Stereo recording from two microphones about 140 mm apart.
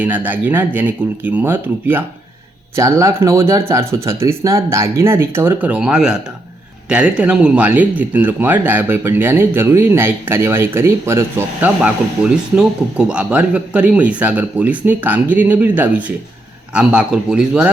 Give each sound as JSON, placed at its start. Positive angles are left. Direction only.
{"t": 0.0, "sound": "speech", "side_deg": -10}